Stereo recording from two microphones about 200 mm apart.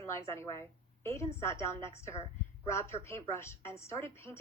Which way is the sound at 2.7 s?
15° left (ahead or behind).